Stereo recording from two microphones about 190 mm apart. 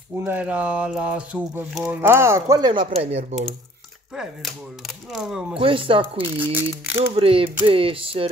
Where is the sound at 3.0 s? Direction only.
35° right (ahead or behind).